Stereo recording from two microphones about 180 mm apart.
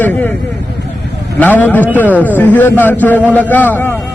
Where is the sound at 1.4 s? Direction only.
10° left (ahead or behind).